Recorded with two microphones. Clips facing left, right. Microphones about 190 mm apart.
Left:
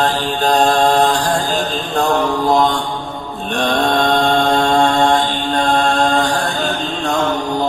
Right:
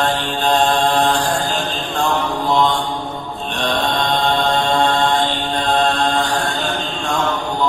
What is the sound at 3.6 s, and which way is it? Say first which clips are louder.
Mantra: left 4 dB; 50° left (ahead or behind).